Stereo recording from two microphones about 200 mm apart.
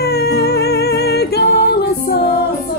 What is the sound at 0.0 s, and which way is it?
Music, 55° left (ahead or behind).